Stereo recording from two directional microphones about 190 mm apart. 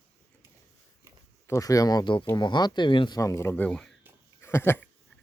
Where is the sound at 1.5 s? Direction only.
15° left (ahead or behind).